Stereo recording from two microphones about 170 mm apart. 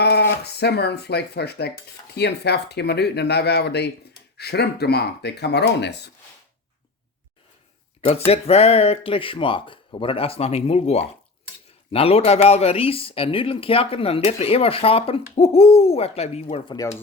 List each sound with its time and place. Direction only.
0.0 s speech: 75° left (ahead or behind); by 6.1 s 90° left
8.3 s speech: 35° left (ahead or behind)